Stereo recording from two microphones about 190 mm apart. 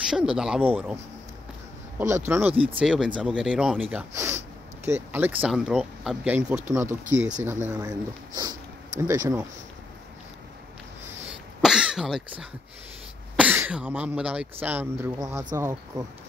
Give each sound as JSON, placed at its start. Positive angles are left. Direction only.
{"t": 0.0, "sound": "speech", "side_deg": -5}
{"t": 2.0, "sound": "speech", "side_deg": -10}
{"t": 11.2, "sound": "cough", "side_deg": -5}
{"t": 13.4, "sound": "speech", "side_deg": -5}